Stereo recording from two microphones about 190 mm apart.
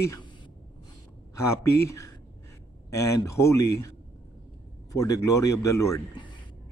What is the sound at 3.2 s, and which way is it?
Speech, 15° left (ahead or behind).